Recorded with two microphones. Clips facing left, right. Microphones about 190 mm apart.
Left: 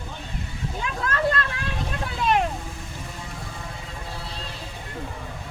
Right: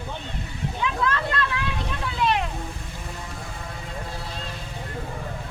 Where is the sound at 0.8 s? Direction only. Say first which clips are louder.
Right 1 dB; 45° left (ahead or behind).